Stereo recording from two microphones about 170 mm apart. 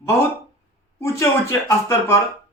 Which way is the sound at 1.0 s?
15° left (ahead or behind).